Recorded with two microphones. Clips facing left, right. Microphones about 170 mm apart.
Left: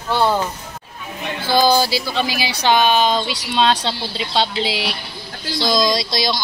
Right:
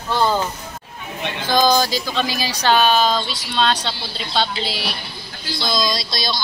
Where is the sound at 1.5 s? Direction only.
10° left (ahead or behind).